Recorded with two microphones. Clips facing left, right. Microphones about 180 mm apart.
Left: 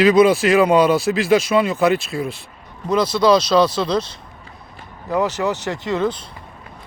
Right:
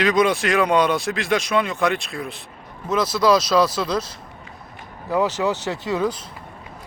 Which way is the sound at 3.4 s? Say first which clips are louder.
Left 3 dB; 30° left (ahead or behind).